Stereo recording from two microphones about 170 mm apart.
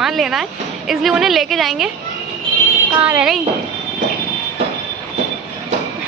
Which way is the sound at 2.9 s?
5° right (ahead or behind).